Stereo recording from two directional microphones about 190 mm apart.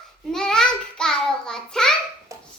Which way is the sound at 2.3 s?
15° right (ahead or behind).